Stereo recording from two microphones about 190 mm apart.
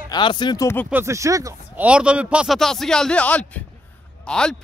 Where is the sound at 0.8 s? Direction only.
10° right (ahead or behind).